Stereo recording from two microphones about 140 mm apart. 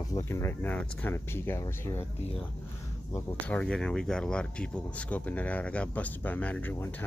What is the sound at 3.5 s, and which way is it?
Speech, 10° left (ahead or behind).